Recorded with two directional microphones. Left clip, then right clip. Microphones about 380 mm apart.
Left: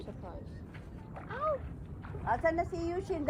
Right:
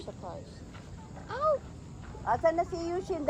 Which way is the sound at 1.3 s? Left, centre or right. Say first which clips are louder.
Right 5 dB; centre.